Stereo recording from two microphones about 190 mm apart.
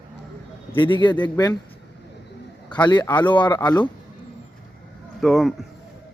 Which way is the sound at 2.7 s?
25° left (ahead or behind).